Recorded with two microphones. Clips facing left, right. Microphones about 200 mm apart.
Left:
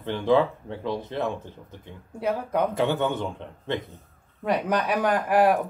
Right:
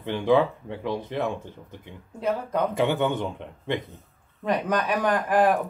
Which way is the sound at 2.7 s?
20° right (ahead or behind).